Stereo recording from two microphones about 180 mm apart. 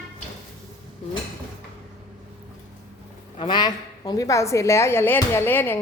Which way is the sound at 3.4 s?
25° left (ahead or behind).